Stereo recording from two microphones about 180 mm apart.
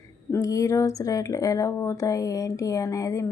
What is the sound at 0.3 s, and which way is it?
A woman's voice, 15° left (ahead or behind).